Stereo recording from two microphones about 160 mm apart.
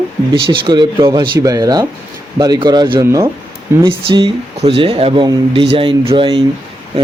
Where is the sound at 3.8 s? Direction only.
30° right (ahead or behind).